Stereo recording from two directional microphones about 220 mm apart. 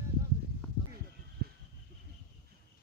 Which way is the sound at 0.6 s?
5° left (ahead or behind).